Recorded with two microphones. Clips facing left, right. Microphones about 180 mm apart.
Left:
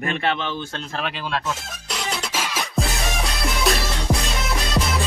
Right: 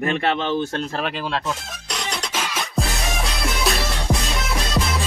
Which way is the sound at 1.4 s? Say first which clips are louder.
Right 1 dB; centre (ahead or behind).